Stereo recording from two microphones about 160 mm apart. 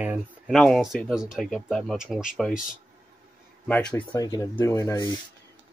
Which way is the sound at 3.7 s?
5° left (ahead or behind).